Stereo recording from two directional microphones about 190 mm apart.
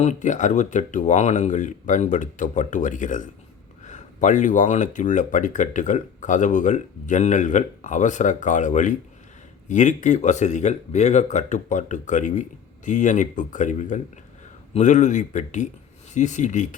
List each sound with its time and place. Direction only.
0.0 s speech: 40° left (ahead or behind)